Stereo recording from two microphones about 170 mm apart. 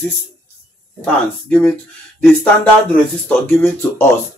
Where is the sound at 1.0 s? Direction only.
5° left (ahead or behind).